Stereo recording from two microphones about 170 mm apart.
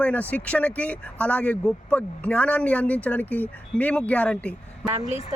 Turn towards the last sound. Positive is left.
turn(degrees=-40)  # may be behind; listen again after turning